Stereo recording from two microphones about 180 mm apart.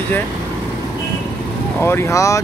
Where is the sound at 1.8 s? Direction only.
15° left (ahead or behind).